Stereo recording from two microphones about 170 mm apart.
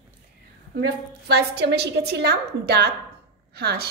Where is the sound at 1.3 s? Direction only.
75° right (ahead or behind).